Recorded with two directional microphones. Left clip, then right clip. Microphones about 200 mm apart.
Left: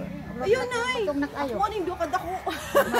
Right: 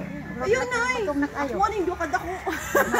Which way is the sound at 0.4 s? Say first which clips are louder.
Right 1 dB; 35° left (ahead or behind).